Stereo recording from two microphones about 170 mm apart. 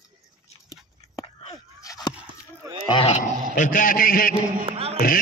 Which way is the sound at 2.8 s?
30° left (ahead or behind).